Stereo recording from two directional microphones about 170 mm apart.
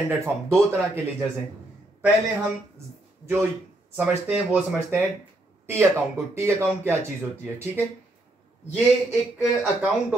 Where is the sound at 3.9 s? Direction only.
10° right (ahead or behind).